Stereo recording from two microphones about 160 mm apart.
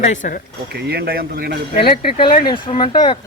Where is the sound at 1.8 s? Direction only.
70° left (ahead or behind).